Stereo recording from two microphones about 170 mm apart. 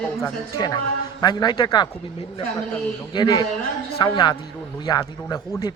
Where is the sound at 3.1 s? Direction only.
25° left (ahead or behind).